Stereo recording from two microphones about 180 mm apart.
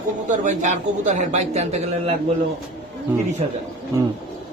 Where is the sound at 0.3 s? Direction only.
45° right (ahead or behind).